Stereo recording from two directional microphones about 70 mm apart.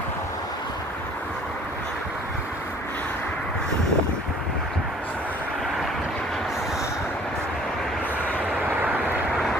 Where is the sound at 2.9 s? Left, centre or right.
Left.